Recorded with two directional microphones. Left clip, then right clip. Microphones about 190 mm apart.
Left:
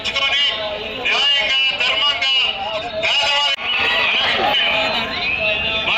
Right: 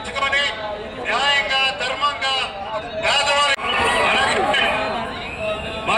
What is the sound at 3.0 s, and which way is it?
Neigh, 45° right (ahead or behind).